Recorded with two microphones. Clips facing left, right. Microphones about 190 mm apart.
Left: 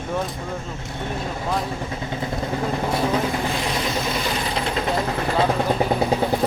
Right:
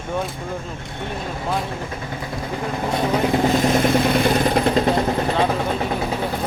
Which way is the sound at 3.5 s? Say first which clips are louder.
Right 8 dB; 50° right (ahead or behind).